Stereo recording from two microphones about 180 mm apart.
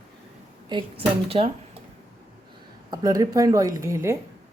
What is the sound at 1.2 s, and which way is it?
Speech, 30° right (ahead or behind).